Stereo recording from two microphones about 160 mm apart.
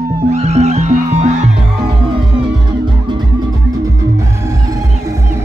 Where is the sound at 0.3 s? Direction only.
40° right (ahead or behind).